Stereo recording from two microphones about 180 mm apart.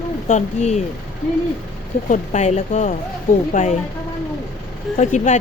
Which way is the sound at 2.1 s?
40° left (ahead or behind).